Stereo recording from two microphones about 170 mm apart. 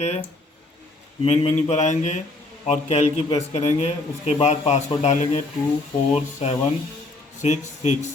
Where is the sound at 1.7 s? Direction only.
45° left (ahead or behind).